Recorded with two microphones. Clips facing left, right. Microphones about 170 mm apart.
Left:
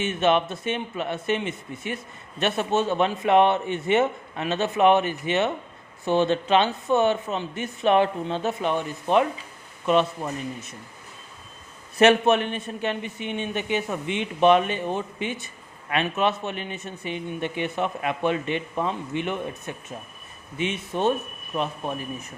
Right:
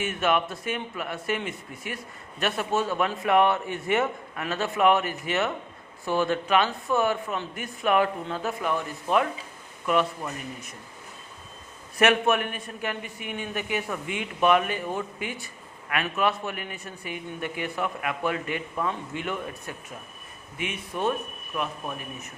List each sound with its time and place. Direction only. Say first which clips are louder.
0.0 s a man's voice: left 3 dB; 25° left (ahead or behind)
11.9 s a man's voice: left 4 dB; 25° left (ahead or behind)